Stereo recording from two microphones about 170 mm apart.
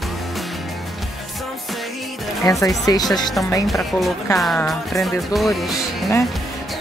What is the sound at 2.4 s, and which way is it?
Speech, 20° left (ahead or behind).